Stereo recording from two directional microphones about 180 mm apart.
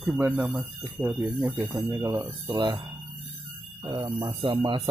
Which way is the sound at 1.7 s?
20° right (ahead or behind).